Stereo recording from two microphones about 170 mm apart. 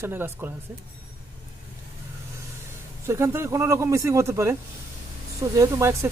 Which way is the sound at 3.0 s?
15° right (ahead or behind).